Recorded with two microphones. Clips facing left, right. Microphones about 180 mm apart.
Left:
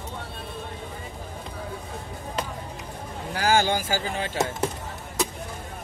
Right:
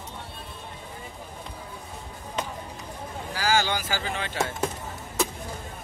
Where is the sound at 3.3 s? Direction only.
55° left (ahead or behind).